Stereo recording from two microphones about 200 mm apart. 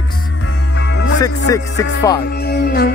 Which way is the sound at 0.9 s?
70° left (ahead or behind).